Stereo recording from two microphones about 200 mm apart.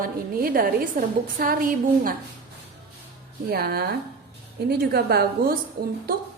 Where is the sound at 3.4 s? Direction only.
50° right (ahead or behind).